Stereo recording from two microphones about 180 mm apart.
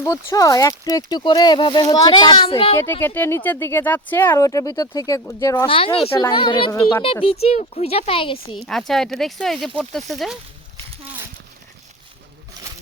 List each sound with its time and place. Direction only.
0.0 s speech: 15° left (ahead or behind)
2.7 s speech: 15° left (ahead or behind)
5.6 s speech: 30° left (ahead or behind)
8.6 s speech: centre (ahead or behind)